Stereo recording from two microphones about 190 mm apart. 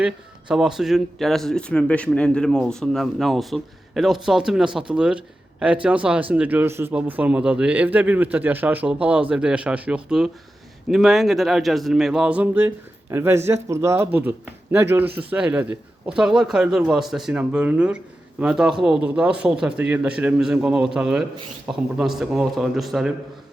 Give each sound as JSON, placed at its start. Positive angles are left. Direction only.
{"t": 0.0, "sound": "speech", "side_deg": -5}